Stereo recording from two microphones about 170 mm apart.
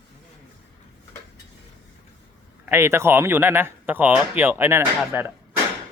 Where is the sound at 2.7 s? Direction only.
15° right (ahead or behind).